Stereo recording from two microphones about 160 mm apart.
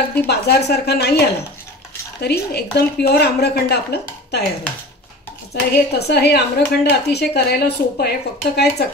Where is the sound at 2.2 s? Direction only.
85° left.